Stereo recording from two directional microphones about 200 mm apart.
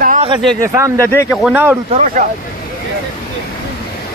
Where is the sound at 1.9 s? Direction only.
40° right (ahead or behind).